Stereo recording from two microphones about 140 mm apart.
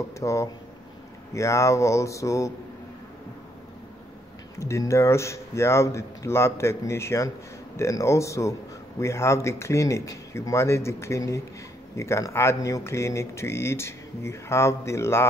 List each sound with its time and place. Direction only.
0.2 s speech: 20° left (ahead or behind)
4.6 s speech: 20° left (ahead or behind)